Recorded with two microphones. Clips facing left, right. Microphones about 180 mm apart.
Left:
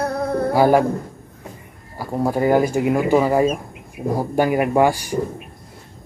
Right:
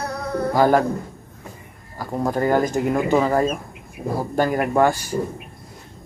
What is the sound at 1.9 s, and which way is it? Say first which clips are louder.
Speech: left 2 dB; 10° left (ahead or behind).